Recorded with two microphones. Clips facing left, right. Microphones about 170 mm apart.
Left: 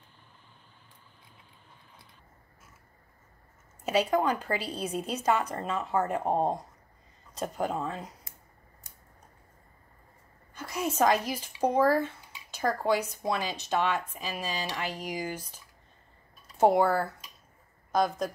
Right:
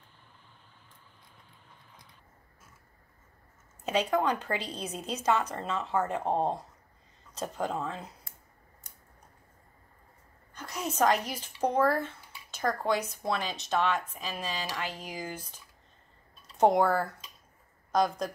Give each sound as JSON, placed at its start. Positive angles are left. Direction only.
{"t": 3.8, "sound": "a woman's voice", "side_deg": 10}
{"t": 8.0, "sound": "a sound", "side_deg": 20}
{"t": 10.6, "sound": "a woman's voice", "side_deg": 10}
{"t": 16.5, "sound": "a woman's voice", "side_deg": 5}